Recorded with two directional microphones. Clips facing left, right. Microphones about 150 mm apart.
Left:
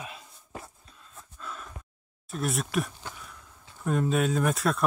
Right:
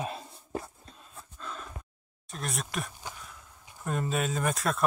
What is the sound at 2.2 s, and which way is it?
Speech, 5° left (ahead or behind).